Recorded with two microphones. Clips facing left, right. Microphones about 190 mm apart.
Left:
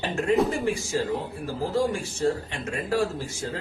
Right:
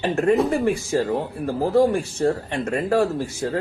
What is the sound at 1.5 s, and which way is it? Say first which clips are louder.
Speech: right 7 dB; 60° right (ahead or behind).